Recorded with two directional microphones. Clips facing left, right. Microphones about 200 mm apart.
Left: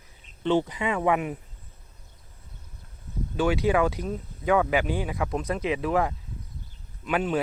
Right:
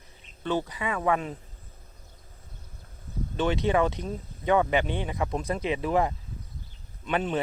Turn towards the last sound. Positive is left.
turn(degrees=5)  # may be behind; listen again after turning